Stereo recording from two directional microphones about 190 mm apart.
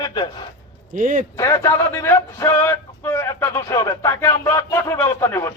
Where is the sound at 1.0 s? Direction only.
45° right (ahead or behind).